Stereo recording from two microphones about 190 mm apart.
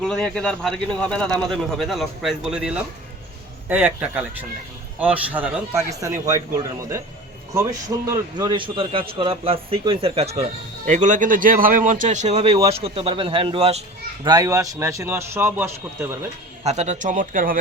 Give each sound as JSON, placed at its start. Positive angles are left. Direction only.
{"t": 0.0, "sound": "a man's voice", "side_deg": 5}
{"t": 5.9, "sound": "a man's voice", "side_deg": -15}
{"t": 7.5, "sound": "a man's voice", "side_deg": -15}
{"t": 14.3, "sound": "a man's voice", "side_deg": -20}
{"t": 16.6, "sound": "speech", "side_deg": -35}